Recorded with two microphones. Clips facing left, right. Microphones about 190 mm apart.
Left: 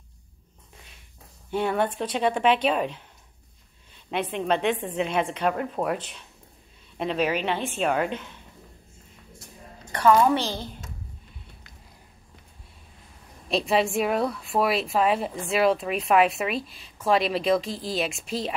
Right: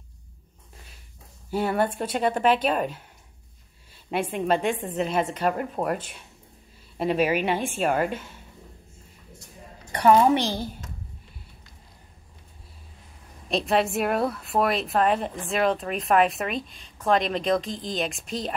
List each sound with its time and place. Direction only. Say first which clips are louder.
1.5 s a woman's voice: even; 5° right (ahead or behind)
3.9 s a sound: right 1 dB; 5° right (ahead or behind)
4.6 s a woman's voice: left 1 dB; 45° right (ahead or behind)
4.8 s a woman's voice: even; centre (ahead or behind)
7.0 s a woman's voice: right 2 dB; 10° right (ahead or behind)
10.3 s a woman's voice: right 2 dB; 15° right (ahead or behind)
13.5 s a woman's voice: even; centre (ahead or behind)